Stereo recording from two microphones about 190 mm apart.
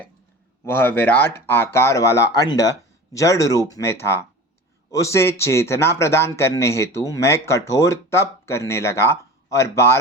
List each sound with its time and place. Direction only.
0.6 s speech: 10° left (ahead or behind)